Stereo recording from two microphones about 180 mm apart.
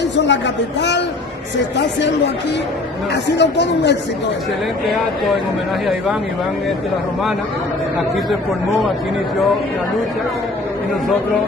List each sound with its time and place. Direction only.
0.1 s a man's voice: 75° left (ahead or behind)